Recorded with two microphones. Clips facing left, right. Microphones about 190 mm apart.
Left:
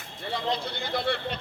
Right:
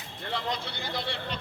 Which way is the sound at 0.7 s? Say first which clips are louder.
Left 6 dB; 55° left (ahead or behind).